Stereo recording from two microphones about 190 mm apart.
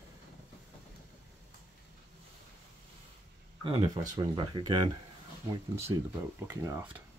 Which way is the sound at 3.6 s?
25° right (ahead or behind).